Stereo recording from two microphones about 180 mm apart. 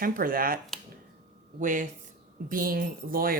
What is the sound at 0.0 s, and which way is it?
Speech, 50° right (ahead or behind).